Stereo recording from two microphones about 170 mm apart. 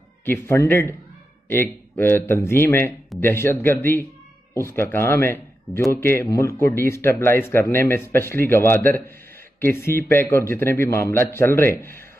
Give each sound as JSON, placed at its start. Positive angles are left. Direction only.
{"t": 0.2, "sound": "speech", "side_deg": 15}